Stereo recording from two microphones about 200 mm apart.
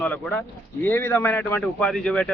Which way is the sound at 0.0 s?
5° left (ahead or behind).